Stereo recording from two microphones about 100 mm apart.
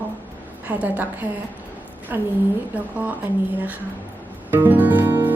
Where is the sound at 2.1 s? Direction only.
25° right (ahead or behind).